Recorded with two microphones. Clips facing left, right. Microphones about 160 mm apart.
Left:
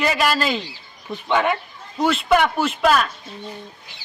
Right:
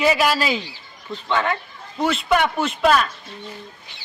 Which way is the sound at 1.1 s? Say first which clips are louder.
Left 2 dB; 15° left (ahead or behind).